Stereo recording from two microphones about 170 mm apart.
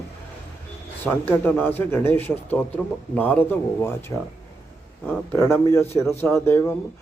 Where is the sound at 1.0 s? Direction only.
10° left (ahead or behind).